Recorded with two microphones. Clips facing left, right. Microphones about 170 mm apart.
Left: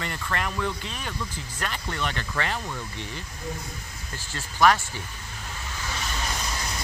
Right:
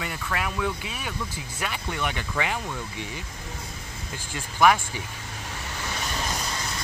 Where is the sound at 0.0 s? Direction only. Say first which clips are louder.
Even; 5° right (ahead or behind).